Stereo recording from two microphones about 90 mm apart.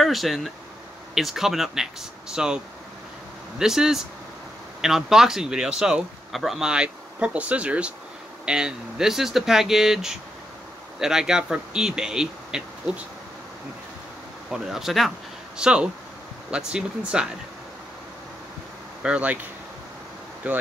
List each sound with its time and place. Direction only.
0.0 s speech: centre (ahead or behind)
14.5 s speech: 5° right (ahead or behind)
19.0 s speech: 15° right (ahead or behind)
20.4 s speech: 15° right (ahead or behind)